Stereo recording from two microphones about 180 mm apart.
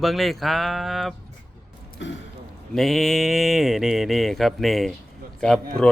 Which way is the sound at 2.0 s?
90° left.